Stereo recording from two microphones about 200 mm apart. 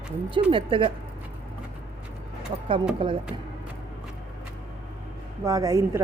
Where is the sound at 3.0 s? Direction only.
25° right (ahead or behind).